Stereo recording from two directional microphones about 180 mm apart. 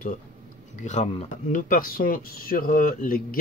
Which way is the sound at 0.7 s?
40° left (ahead or behind).